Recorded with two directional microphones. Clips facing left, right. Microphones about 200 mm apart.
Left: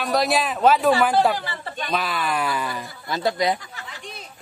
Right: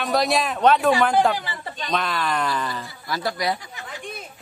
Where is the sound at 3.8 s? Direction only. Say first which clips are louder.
Right 4 dB; 50° right (ahead or behind).